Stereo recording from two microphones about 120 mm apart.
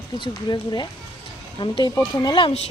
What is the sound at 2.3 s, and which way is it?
Speech, 45° left (ahead or behind).